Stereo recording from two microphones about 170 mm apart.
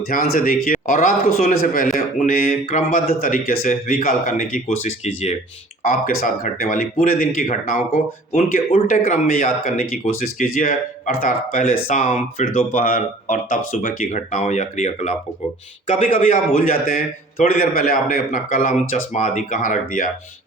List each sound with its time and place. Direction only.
0.1 s a man's voice: 55° left (ahead or behind)
5.8 s speech: 55° left (ahead or behind)
16.1 s speech: 50° left (ahead or behind)